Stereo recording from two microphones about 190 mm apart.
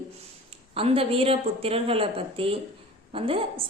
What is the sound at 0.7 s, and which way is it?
A woman's voice, 30° right (ahead or behind).